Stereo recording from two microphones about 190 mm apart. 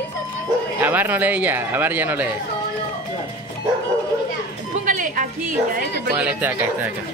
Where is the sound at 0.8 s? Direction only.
10° right (ahead or behind).